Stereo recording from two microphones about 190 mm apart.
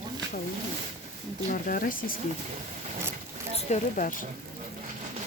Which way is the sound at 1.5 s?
45° left (ahead or behind).